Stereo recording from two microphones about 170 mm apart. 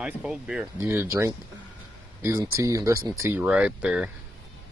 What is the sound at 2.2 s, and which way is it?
Speech, 15° right (ahead or behind).